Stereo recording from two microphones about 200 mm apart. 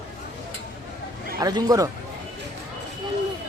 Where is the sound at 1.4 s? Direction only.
20° right (ahead or behind).